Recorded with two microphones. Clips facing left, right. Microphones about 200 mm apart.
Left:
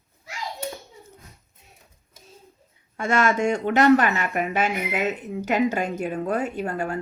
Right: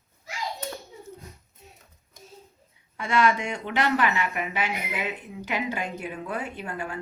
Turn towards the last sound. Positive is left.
turn(degrees=45)  # may be behind; listen again after turning